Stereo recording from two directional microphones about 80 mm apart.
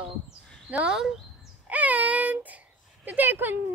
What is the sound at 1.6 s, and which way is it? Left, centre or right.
A woman's voice, centre.